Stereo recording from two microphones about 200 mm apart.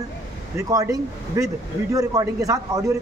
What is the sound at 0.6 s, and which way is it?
Speech, 15° right (ahead or behind).